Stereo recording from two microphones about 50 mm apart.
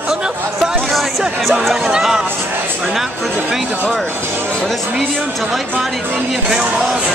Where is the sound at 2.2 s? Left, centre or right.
Right.